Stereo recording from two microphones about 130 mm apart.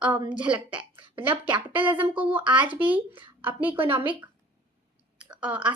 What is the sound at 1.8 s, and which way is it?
Speech, 40° right (ahead or behind).